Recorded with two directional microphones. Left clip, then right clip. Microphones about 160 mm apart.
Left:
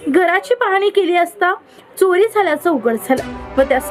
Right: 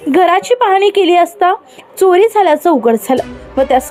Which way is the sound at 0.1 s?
20° right (ahead or behind).